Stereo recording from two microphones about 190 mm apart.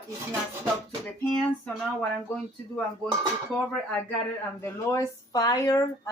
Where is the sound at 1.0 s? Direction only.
5° left (ahead or behind).